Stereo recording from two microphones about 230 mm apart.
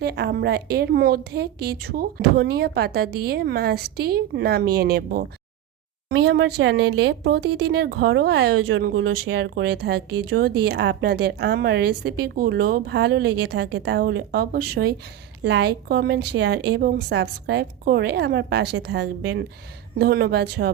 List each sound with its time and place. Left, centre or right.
0.0 s speech: right